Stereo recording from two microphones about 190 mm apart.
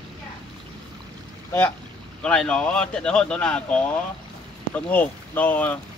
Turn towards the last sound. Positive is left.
turn(degrees=10)  # may be behind; listen again after turning